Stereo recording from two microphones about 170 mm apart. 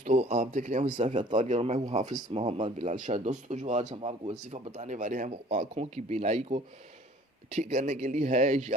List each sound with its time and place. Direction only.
0.0 s speech: 45° right (ahead or behind)